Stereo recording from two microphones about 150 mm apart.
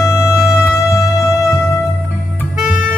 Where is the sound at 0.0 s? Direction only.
20° left (ahead or behind).